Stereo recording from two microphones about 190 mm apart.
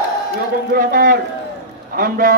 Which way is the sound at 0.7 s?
45° right (ahead or behind).